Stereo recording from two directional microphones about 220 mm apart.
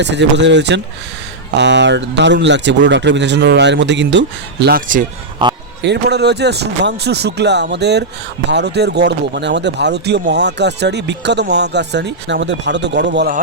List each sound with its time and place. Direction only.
0.0 s speech: 50° right (ahead or behind)